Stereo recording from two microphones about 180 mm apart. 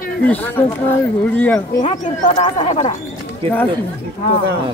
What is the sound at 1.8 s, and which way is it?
Speech, 45° left (ahead or behind).